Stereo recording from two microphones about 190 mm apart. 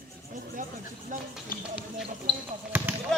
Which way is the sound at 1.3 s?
5° right (ahead or behind).